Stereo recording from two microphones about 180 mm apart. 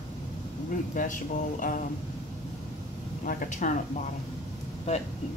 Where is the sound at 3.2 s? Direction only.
45° left (ahead or behind).